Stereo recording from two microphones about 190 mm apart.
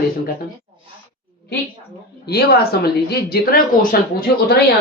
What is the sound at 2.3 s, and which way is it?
Speech, 55° left (ahead or behind).